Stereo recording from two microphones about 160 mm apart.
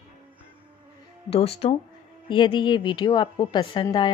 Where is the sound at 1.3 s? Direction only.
40° left (ahead or behind).